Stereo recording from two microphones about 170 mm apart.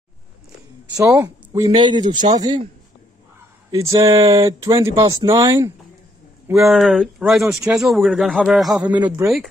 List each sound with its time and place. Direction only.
1.0 s speech: 15° right (ahead or behind)
4.1 s speech: 30° right (ahead or behind)
4.4 s speech: 15° right (ahead or behind)
6.4 s speech: 5° right (ahead or behind)
9.0 s speech: 20° right (ahead or behind)